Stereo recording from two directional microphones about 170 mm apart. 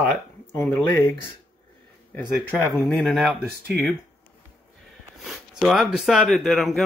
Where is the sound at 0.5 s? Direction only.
15° left (ahead or behind).